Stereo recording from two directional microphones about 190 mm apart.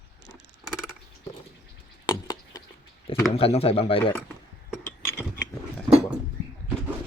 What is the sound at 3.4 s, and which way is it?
Speech, 30° left (ahead or behind).